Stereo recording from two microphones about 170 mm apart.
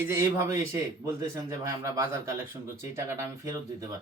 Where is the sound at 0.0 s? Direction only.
15° right (ahead or behind).